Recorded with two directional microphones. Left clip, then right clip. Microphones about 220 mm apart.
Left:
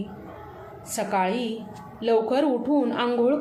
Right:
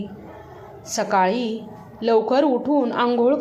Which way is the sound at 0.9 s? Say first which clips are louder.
Right 5 dB; 10° right (ahead or behind).